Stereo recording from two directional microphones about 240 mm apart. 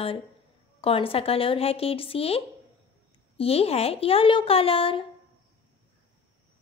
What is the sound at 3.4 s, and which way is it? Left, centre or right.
Speech, left.